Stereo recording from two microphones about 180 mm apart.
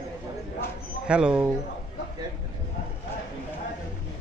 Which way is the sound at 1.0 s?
5° right (ahead or behind).